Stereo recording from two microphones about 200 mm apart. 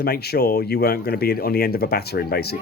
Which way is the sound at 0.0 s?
50° left (ahead or behind).